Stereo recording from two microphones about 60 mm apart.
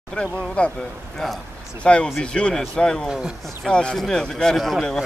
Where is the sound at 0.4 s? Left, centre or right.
Centre.